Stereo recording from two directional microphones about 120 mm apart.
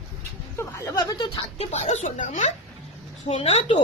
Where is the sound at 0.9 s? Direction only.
35° left (ahead or behind).